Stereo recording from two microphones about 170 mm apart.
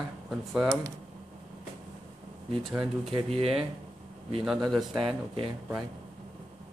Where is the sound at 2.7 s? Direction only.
5° right (ahead or behind).